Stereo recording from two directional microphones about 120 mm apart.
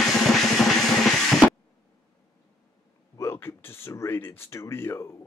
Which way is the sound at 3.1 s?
20° left (ahead or behind).